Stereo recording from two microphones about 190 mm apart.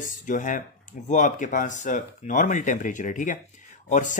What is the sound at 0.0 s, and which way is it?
Speech, 45° left (ahead or behind).